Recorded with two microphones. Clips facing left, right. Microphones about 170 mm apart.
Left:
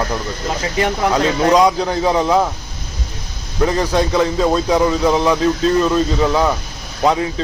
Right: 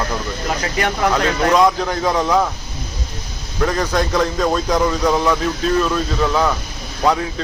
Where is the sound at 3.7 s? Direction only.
10° left (ahead or behind).